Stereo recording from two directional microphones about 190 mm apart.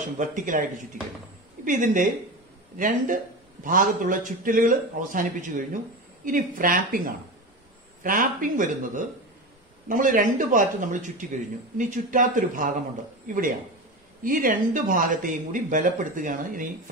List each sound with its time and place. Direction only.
0.0 s a woman's voice: 40° right (ahead or behind)
3.6 s speech: 45° right (ahead or behind)